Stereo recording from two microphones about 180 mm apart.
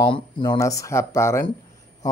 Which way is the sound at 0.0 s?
25° left (ahead or behind).